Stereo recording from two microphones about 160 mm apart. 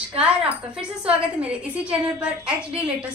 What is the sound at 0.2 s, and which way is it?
A woman's voice, 5° right (ahead or behind).